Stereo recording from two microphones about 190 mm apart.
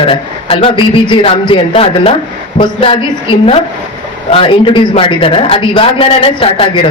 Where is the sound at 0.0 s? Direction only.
30° left (ahead or behind).